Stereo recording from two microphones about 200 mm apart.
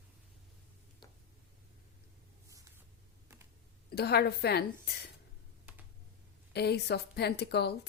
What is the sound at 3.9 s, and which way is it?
A woman's voice, 55° left (ahead or behind).